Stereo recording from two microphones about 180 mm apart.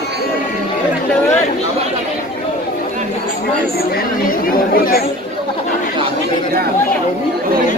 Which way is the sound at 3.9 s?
50° left (ahead or behind).